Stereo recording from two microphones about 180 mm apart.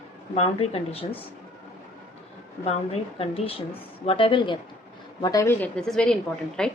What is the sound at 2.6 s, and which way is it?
A woman's voice, 35° left (ahead or behind).